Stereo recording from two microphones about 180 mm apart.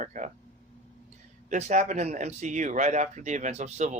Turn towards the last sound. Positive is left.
turn(degrees=-40)  # may be behind; listen again after turning